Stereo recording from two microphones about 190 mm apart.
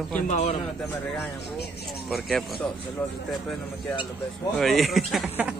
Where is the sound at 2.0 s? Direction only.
Centre (ahead or behind).